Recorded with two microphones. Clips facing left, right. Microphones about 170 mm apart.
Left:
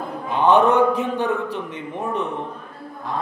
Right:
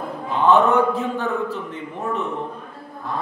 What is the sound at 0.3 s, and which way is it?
A man's voice, 20° left (ahead or behind).